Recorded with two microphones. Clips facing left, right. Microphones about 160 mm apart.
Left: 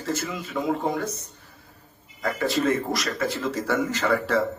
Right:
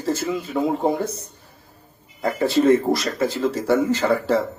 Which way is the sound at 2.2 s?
30° right (ahead or behind).